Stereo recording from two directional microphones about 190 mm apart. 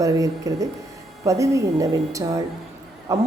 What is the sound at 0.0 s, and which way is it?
Speech, 20° right (ahead or behind).